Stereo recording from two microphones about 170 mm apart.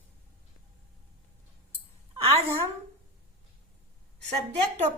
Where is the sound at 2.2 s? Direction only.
35° right (ahead or behind).